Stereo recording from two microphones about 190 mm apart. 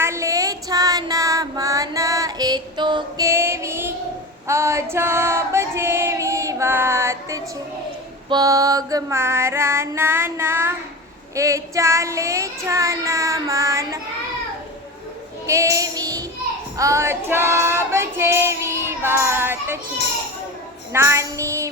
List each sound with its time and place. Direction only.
0.0 s music: 15° right (ahead or behind)
4.4 s female singing: 15° right (ahead or behind)
15.4 s female singing: 15° right (ahead or behind)
20.9 s female singing: 15° right (ahead or behind)